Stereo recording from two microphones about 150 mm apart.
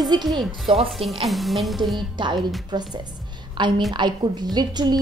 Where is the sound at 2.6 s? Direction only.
30° right (ahead or behind).